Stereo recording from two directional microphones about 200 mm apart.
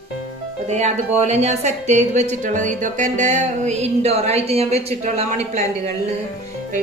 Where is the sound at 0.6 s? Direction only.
35° right (ahead or behind).